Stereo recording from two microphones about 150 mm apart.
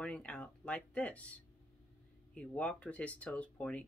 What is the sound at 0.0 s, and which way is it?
Speech, 10° left (ahead or behind).